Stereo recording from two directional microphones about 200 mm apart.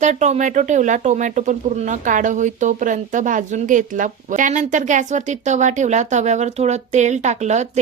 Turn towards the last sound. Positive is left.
turn(degrees=-35)  # may be behind; listen again after turning